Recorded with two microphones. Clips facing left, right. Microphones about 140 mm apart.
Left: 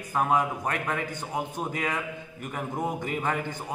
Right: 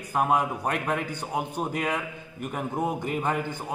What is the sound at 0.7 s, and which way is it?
A man's voice, 10° right (ahead or behind).